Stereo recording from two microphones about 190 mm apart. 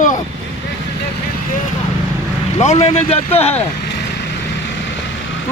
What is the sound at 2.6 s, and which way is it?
Speech, 35° left (ahead or behind).